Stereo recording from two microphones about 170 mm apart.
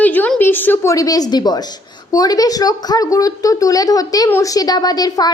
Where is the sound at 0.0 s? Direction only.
10° left (ahead or behind).